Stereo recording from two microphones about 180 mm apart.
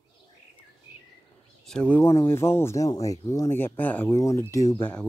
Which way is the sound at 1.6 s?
5° left (ahead or behind).